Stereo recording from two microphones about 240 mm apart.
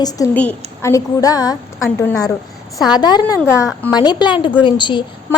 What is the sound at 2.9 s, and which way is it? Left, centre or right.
A woman's voice, centre.